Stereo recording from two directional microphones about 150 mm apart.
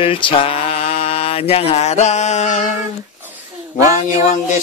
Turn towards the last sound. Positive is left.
turn(degrees=55)  # may be behind; listen again after turning